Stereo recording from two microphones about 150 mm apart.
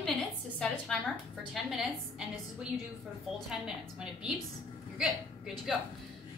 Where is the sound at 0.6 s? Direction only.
Centre (ahead or behind).